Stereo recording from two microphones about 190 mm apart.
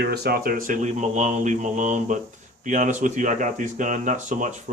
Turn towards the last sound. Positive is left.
turn(degrees=-40)  # may be behind; listen again after turning